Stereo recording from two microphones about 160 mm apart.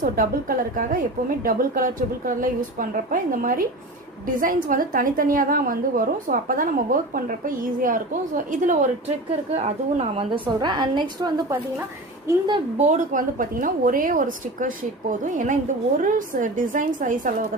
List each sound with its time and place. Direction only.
0.0 s a woman's voice: 60° right (ahead or behind)
9.6 s a woman's voice: 40° right (ahead or behind)
12.7 s a woman's voice: 45° right (ahead or behind)